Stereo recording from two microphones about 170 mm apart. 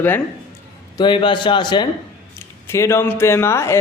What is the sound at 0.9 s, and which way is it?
Speech, 25° left (ahead or behind).